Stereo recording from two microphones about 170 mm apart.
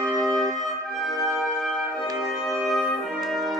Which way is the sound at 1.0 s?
Centre (ahead or behind).